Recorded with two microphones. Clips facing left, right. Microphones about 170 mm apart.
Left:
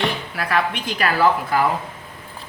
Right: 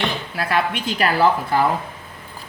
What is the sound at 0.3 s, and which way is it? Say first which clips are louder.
Speech: right 2 dB; 25° right (ahead or behind).